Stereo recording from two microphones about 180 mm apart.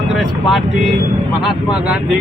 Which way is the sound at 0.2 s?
Centre (ahead or behind).